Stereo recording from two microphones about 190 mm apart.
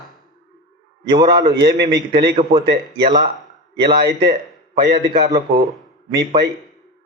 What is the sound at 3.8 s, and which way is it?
Speech, 60° right (ahead or behind).